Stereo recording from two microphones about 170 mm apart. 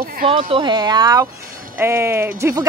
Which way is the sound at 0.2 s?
30° right (ahead or behind).